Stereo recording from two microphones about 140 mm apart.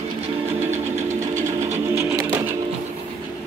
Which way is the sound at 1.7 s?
20° right (ahead or behind).